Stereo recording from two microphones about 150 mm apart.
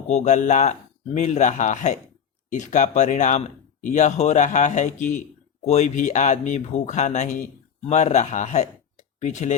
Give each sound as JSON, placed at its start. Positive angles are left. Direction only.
{"t": 0.1, "sound": "speech", "side_deg": 50}